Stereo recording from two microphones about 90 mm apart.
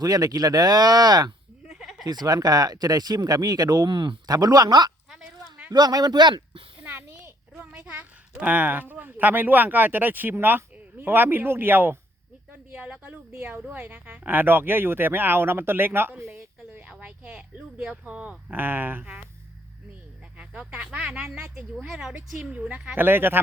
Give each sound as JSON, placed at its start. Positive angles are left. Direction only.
{"t": 0.0, "sound": "speech", "side_deg": -45}
{"t": 1.6, "sound": "bleat", "side_deg": -5}
{"t": 2.0, "sound": "speech", "side_deg": -50}
{"t": 6.7, "sound": "a sound", "side_deg": -20}
{"t": 7.6, "sound": "a woman's voice", "side_deg": -15}
{"t": 16.8, "sound": "a sound", "side_deg": -15}
{"t": 20.4, "sound": "a woman's voice", "side_deg": -10}